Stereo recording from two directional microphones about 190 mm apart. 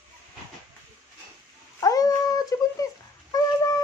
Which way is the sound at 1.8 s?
20° left (ahead or behind).